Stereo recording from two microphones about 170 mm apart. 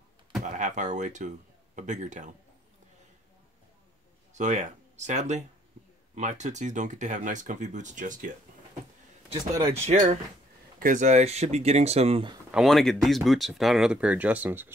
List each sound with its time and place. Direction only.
0.4 s speech: 45° right (ahead or behind)
4.3 s speech: 45° right (ahead or behind)
9.8 s speech: 45° right (ahead or behind)
12.4 s speech: centre (ahead or behind)